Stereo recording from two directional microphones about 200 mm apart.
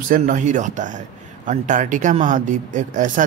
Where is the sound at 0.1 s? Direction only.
40° right (ahead or behind).